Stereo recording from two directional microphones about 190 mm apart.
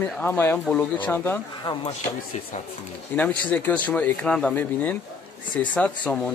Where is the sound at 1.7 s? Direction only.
25° left (ahead or behind).